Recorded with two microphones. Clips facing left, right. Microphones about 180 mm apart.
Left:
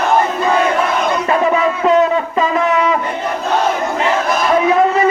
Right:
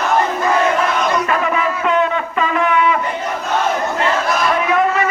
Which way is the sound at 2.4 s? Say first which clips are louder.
Even; 35° left (ahead or behind).